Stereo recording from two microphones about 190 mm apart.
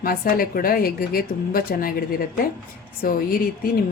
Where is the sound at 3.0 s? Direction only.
50° left (ahead or behind).